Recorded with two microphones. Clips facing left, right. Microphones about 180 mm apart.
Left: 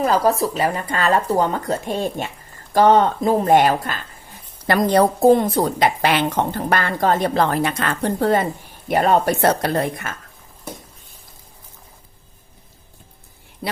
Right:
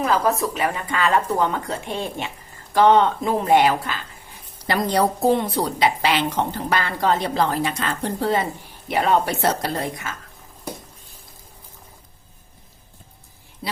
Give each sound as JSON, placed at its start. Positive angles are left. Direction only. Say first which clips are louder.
{"t": 0.0, "sound": "a woman's voice", "louder": "left 3 dB", "side_deg": 35}